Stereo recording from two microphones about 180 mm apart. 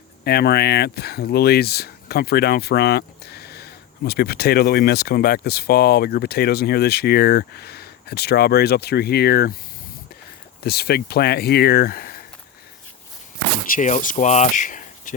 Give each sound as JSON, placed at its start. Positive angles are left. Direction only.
{"t": 0.3, "sound": "speech", "side_deg": 60}
{"t": 10.6, "sound": "speech", "side_deg": 60}
{"t": 13.7, "sound": "speech", "side_deg": 45}